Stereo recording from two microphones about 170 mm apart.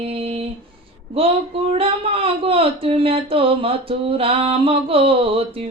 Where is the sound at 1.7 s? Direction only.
35° right (ahead or behind).